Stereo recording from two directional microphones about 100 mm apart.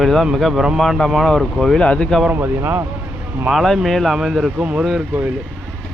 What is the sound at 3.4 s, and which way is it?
Speech, centre (ahead or behind).